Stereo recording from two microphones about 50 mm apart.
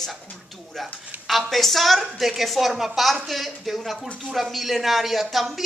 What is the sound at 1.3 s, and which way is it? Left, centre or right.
A woman's voice, centre.